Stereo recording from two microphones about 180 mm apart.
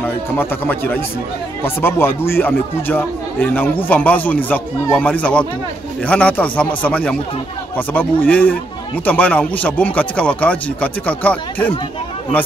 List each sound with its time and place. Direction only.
0.0 s speech: 10° left (ahead or behind)